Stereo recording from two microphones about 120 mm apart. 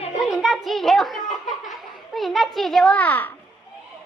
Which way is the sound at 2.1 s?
Centre (ahead or behind).